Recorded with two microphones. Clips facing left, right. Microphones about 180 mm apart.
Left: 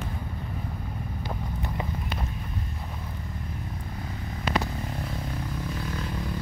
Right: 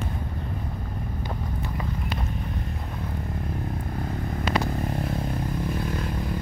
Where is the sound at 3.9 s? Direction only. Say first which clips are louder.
Right 7 dB; 50° right (ahead or behind).